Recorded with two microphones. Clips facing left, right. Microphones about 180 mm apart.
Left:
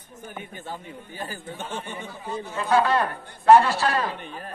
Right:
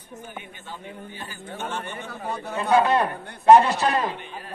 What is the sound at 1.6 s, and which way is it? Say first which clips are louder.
Speech: right 3 dB; 60° right (ahead or behind).